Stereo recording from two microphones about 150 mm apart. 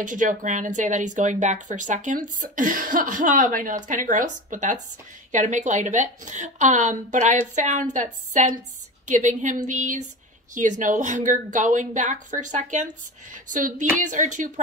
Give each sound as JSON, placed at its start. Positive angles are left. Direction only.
{"t": 0.0, "sound": "a woman's voice", "side_deg": -60}